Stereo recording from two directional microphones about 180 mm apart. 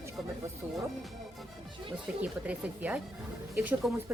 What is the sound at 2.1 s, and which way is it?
Speech, 5° right (ahead or behind).